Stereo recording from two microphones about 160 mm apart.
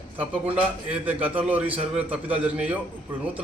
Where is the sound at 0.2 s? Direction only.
10° right (ahead or behind).